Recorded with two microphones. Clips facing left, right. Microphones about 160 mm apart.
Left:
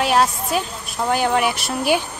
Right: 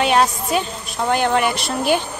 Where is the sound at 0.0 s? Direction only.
Centre (ahead or behind).